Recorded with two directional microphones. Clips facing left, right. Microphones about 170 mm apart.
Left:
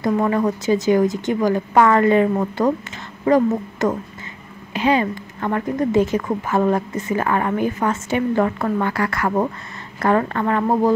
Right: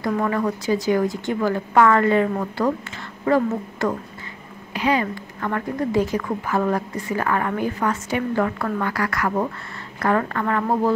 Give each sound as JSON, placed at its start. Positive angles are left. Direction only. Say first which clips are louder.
{"t": 0.0, "sound": "a woman's voice", "louder": "left 4 dB", "side_deg": 20}